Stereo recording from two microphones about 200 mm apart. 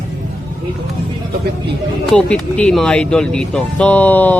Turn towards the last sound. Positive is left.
turn(degrees=10)  # may be behind; listen again after turning